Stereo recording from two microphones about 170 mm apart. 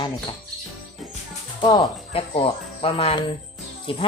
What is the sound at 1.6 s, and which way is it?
Speech, 25° left (ahead or behind).